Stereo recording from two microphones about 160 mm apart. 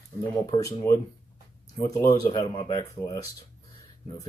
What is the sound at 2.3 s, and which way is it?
Speech, 35° left (ahead or behind).